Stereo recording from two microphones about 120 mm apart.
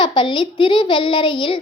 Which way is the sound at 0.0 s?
40° left (ahead or behind).